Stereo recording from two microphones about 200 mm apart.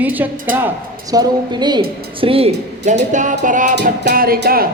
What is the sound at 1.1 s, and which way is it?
A woman's voice, 20° right (ahead or behind).